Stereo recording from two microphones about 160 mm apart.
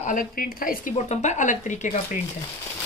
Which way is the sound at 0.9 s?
45° left (ahead or behind).